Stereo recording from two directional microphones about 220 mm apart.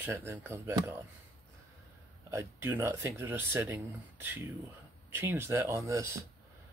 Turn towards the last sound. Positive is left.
turn(degrees=-15)  # may be behind; listen again after turning